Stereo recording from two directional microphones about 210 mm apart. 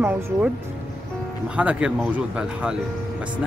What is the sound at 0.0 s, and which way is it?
Speech, 10° right (ahead or behind).